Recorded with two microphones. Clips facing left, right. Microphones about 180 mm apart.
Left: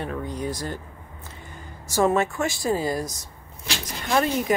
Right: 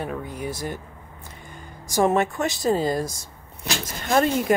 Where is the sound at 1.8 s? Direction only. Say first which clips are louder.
Right 1 dB; 15° right (ahead or behind).